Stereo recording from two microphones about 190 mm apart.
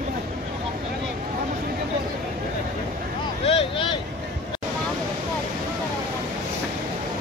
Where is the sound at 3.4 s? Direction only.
30° left (ahead or behind).